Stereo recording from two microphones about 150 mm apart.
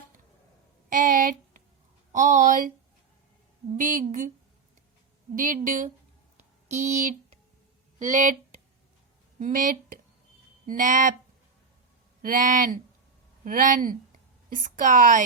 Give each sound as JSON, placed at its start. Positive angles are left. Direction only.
{"t": 0.9, "sound": "a sound", "side_deg": -70}
{"t": 2.1, "sound": "a woman's voice", "side_deg": -55}
{"t": 3.8, "sound": "a woman's voice", "side_deg": -60}
{"t": 5.3, "sound": "a woman's voice", "side_deg": -65}
{"t": 6.9, "sound": "a woman's voice", "side_deg": -55}
{"t": 9.4, "sound": "a woman's voice", "side_deg": -65}
{"t": 12.2, "sound": "a woman's voice", "side_deg": -65}